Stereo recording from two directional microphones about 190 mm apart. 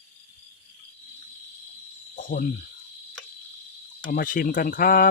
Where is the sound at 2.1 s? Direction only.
45° left (ahead or behind).